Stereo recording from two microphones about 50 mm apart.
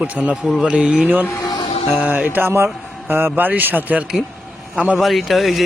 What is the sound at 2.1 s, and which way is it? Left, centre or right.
A man's voice, right.